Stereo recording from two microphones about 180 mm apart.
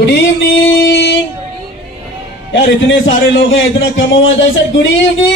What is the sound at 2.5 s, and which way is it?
A man's voice, 85° left.